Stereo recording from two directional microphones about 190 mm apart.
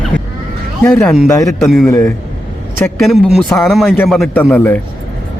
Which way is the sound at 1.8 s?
15° left (ahead or behind).